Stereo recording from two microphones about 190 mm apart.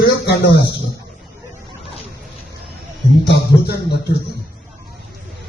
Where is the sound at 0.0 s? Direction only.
60° left (ahead or behind).